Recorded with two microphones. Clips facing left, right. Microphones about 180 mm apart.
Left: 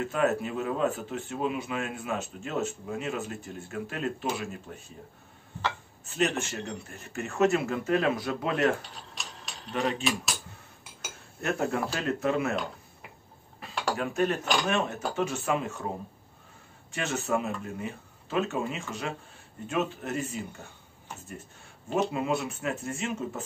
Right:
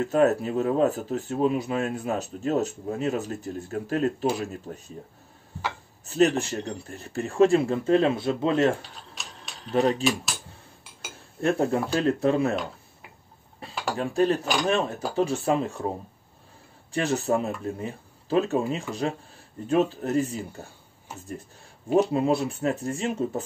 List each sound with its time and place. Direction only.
0.0 s speech: 35° right (ahead or behind)
6.0 s speech: 35° right (ahead or behind)
9.1 s a sound: centre (ahead or behind)
9.7 s speech: 40° right (ahead or behind)
11.4 s speech: 30° right (ahead or behind)
13.6 s dishes: 30° right (ahead or behind)
13.9 s speech: 30° right (ahead or behind)
16.9 s speech: 35° right (ahead or behind)
22.1 s speech: 35° right (ahead or behind)